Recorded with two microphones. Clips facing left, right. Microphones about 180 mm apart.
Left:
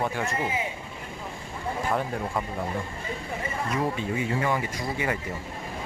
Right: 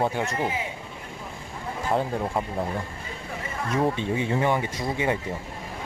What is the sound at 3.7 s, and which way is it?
Speech, 25° right (ahead or behind).